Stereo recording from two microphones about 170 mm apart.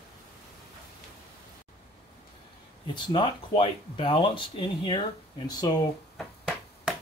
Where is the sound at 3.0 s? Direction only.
30° left (ahead or behind).